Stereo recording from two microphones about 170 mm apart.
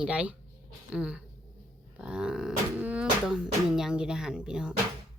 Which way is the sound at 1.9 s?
5° right (ahead or behind).